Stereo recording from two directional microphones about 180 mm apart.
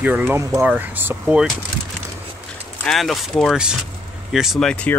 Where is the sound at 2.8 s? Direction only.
Centre (ahead or behind).